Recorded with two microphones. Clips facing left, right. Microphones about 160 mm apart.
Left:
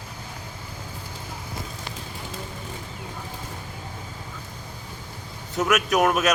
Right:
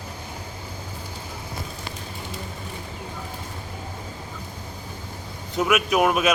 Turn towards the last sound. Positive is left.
turn(degrees=0)  # may be behind; listen again after turning